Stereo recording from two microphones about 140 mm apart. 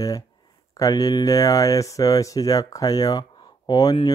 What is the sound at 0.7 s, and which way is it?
Speech, 25° left (ahead or behind).